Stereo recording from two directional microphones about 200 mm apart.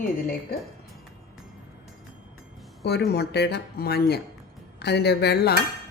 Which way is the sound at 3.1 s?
55° left (ahead or behind).